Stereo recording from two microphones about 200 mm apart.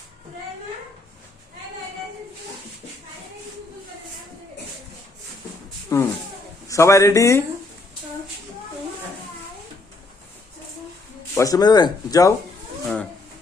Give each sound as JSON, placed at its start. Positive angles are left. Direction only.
{"t": 5.9, "sound": "speech", "side_deg": 15}
{"t": 11.3, "sound": "speech", "side_deg": 20}
{"t": 12.8, "sound": "a sound", "side_deg": 5}